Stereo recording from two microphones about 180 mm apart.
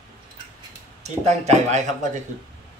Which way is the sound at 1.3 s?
40° right (ahead or behind).